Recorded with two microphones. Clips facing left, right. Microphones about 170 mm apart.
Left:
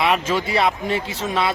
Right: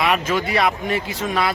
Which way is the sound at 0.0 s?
25° left (ahead or behind).